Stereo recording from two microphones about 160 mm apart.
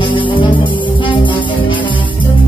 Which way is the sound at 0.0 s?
30° left (ahead or behind).